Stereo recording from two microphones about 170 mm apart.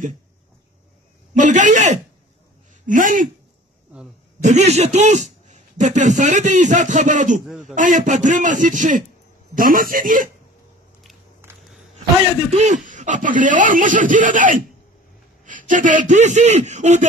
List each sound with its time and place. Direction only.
1.3 s a man's voice: 45° right (ahead or behind)
4.4 s a man's voice: 45° right (ahead or behind)
7.4 s a man's voice: 5° right (ahead or behind)
7.7 s a man's voice: 50° right (ahead or behind)
12.4 s a man's voice: 45° right (ahead or behind)